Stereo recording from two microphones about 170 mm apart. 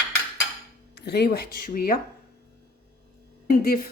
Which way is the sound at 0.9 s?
75° left (ahead or behind).